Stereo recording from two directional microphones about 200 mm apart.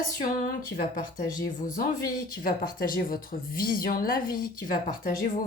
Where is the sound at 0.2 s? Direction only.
45° left (ahead or behind).